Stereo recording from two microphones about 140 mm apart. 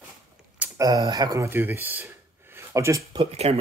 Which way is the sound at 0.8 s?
30° right (ahead or behind).